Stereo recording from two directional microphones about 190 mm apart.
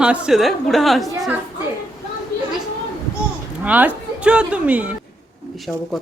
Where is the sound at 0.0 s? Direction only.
5° right (ahead or behind).